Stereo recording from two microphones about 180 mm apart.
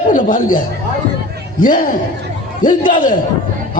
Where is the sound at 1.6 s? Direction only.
50° left (ahead or behind).